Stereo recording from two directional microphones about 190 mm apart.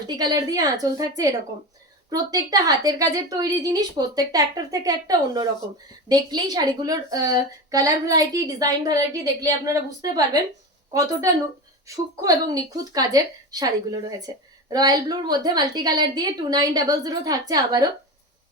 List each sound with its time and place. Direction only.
0.2 s a woman's voice: 20° right (ahead or behind)